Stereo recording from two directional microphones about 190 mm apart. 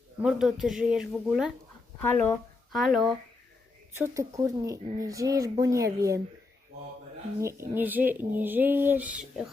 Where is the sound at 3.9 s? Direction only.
15° right (ahead or behind).